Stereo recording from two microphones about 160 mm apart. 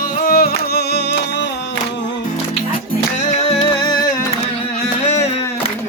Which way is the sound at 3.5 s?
35° left (ahead or behind).